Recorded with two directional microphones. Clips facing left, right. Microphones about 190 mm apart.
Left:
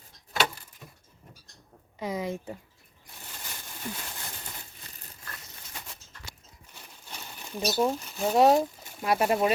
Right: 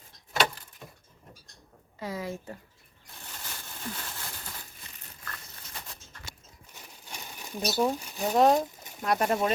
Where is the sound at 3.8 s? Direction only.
15° left (ahead or behind).